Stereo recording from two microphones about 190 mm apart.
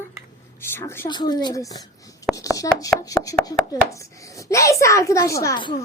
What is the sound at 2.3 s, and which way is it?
Chopping, 15° left (ahead or behind).